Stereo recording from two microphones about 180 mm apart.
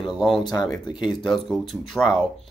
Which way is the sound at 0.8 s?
25° left (ahead or behind).